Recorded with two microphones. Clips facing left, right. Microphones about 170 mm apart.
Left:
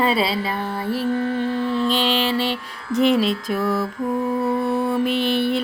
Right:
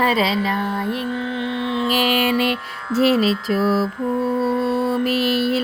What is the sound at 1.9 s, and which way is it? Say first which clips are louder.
Music: right 2 dB; 10° right (ahead or behind).